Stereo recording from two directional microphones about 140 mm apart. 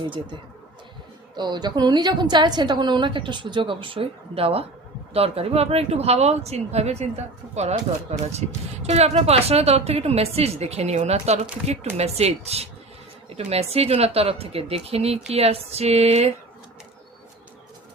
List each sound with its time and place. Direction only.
1.4 s a woman's voice: 30° right (ahead or behind); by 16.3 s 50° right (ahead or behind)